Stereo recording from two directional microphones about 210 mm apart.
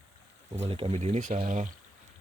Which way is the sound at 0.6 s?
30° right (ahead or behind).